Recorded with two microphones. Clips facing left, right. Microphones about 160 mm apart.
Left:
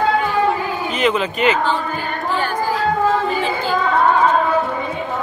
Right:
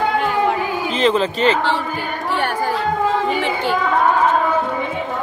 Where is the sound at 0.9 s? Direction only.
30° right (ahead or behind).